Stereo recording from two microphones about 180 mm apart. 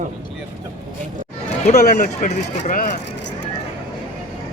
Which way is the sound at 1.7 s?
55° left (ahead or behind).